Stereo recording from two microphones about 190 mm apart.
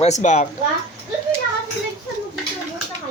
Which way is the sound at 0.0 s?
40° left (ahead or behind).